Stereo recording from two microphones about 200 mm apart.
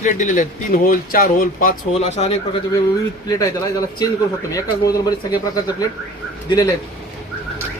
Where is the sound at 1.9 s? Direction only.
30° left (ahead or behind).